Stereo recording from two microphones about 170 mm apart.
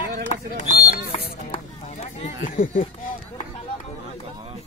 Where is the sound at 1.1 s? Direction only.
35° left (ahead or behind); by 2.9 s 50° left (ahead or behind).